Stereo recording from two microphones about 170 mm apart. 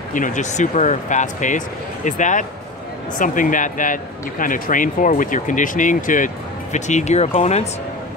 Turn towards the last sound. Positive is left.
turn(degrees=40)  # may be behind; listen again after turning